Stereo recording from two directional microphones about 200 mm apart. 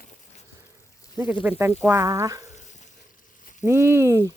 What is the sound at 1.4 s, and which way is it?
Speech, 10° right (ahead or behind).